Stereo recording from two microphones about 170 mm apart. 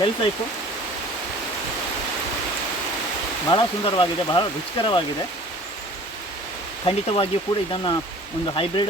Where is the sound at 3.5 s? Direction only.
25° left (ahead or behind).